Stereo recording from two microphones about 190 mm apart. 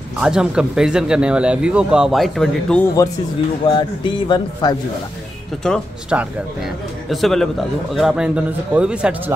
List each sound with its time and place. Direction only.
0.2 s speech: 5° right (ahead or behind)
3.6 s speech: 25° left (ahead or behind)
5.6 s speech: 5° left (ahead or behind)